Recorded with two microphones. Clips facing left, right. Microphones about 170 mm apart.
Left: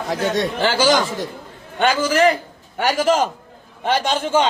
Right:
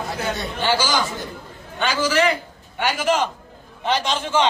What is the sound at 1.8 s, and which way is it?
A man's voice, 50° left (ahead or behind).